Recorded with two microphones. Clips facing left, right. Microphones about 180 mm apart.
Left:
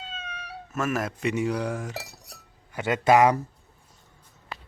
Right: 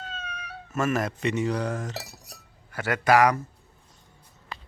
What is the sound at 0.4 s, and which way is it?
Speech, centre (ahead or behind).